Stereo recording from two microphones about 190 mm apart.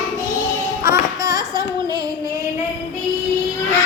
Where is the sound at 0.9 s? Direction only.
20° right (ahead or behind).